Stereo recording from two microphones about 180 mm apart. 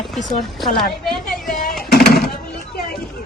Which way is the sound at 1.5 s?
50° left (ahead or behind).